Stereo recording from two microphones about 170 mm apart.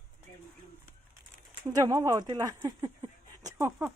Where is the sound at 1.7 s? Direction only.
20° right (ahead or behind).